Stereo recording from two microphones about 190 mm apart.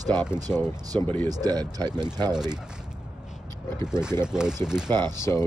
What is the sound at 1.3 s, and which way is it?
Speech, 20° right (ahead or behind).